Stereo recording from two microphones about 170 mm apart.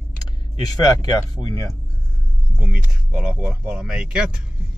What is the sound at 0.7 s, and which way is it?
Speech, 25° left (ahead or behind).